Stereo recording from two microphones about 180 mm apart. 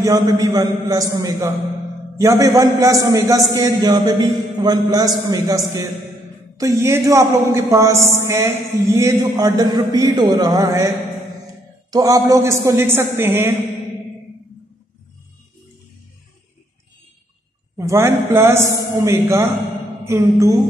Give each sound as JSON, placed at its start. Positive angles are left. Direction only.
{"t": 0.0, "sound": "a man's voice", "side_deg": -20}
{"t": 11.9, "sound": "a man's voice", "side_deg": -20}
{"t": 17.7, "sound": "a man's voice", "side_deg": -15}